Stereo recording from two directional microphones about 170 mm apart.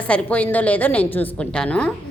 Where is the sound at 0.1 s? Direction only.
5° left (ahead or behind).